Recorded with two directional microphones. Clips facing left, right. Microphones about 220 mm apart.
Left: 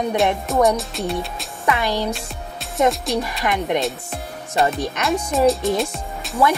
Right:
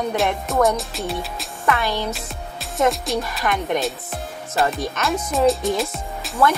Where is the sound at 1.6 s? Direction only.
15° left (ahead or behind).